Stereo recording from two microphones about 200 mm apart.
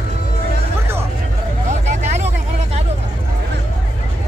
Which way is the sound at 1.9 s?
35° right (ahead or behind).